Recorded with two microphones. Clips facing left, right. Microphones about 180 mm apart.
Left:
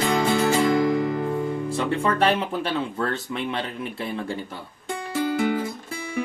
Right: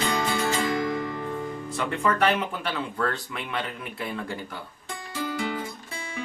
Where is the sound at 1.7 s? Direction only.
30° left (ahead or behind).